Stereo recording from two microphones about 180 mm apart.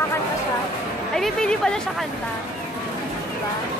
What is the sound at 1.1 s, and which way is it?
Speech, 5° left (ahead or behind).